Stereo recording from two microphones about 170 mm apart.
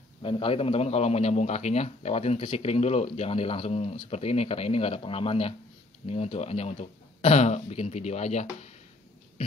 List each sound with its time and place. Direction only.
0.2 s a man's voice: 30° left (ahead or behind)